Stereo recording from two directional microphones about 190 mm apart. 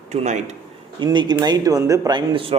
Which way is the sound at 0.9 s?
25° right (ahead or behind).